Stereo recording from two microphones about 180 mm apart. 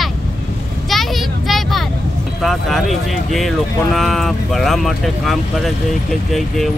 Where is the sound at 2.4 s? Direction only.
Centre (ahead or behind).